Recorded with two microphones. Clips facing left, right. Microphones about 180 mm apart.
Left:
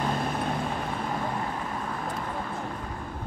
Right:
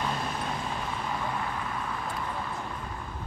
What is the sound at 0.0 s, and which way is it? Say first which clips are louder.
Vehicle: left 4 dB; 50° left (ahead or behind).